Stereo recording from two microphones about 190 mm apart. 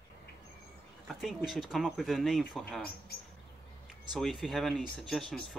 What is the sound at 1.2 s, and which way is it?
Speech, 5° right (ahead or behind).